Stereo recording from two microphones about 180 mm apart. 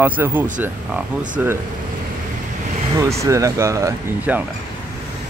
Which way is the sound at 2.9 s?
15° right (ahead or behind).